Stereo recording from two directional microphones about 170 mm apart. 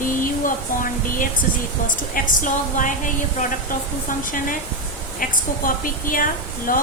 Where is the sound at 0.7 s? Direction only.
50° left (ahead or behind).